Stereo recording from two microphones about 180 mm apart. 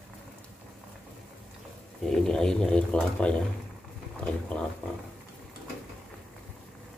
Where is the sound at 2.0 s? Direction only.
5° left (ahead or behind).